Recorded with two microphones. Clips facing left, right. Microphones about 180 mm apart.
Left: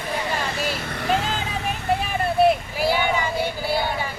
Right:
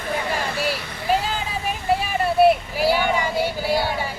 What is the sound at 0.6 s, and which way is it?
Vehicle, 45° left (ahead or behind).